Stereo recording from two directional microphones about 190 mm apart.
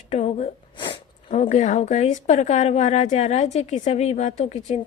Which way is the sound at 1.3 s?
40° left (ahead or behind).